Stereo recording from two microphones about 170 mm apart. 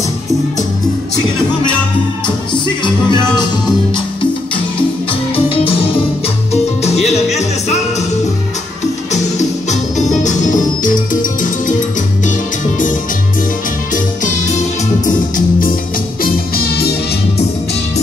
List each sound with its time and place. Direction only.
2.8 s music: 25° left (ahead or behind)
5.5 s music: 35° left (ahead or behind)
9.1 s music: 45° left (ahead or behind)
12.3 s music: 50° left (ahead or behind)
13.9 s music: 50° left (ahead or behind); by 16.9 s 65° left (ahead or behind)